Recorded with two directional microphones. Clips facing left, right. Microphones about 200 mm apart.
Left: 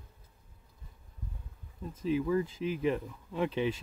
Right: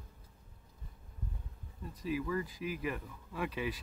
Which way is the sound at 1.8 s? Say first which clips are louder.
Left 6 dB; 25° left (ahead or behind).